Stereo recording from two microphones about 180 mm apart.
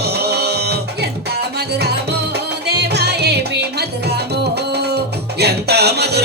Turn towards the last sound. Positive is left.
turn(degrees=-65)  # may be behind; listen again after turning